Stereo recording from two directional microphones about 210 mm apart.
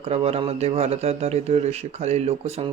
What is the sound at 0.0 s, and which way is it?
Speech, 30° right (ahead or behind).